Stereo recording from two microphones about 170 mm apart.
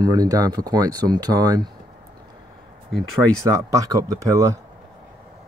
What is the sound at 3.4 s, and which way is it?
Speech, 20° right (ahead or behind).